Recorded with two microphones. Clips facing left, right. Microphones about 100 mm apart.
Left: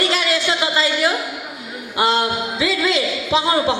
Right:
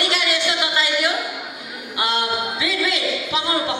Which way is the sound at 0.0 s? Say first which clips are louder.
Left 3 dB; 35° left (ahead or behind).